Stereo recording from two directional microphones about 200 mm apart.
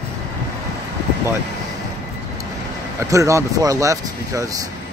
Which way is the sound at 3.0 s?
15° right (ahead or behind).